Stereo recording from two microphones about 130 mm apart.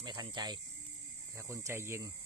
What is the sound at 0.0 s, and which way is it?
Cricket, 35° right (ahead or behind).